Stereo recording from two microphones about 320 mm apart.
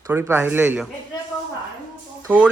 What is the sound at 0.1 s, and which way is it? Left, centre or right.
Speech, centre.